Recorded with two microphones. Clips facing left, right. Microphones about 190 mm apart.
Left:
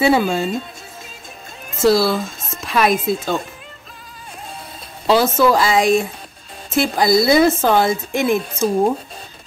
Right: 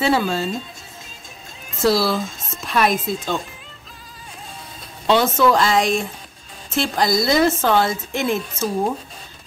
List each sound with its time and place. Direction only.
0.0 s speech: 15° left (ahead or behind)
1.8 s speech: centre (ahead or behind)
5.0 s speech: 5° left (ahead or behind)